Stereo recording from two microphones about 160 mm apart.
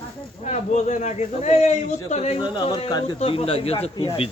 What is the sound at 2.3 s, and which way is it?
Speech, 30° left (ahead or behind).